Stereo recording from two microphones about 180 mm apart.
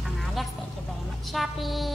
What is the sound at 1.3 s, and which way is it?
Speech, centre (ahead or behind).